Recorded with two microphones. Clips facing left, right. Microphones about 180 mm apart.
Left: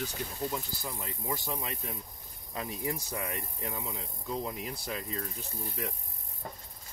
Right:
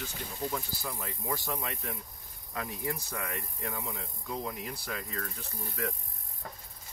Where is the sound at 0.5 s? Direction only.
20° left (ahead or behind).